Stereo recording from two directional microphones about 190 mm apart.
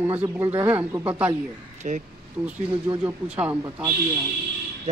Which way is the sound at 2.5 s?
10° right (ahead or behind).